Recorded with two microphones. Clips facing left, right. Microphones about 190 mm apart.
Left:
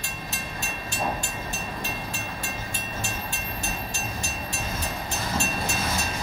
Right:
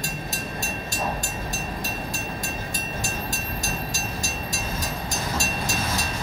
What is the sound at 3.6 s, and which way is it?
Train, 40° right (ahead or behind).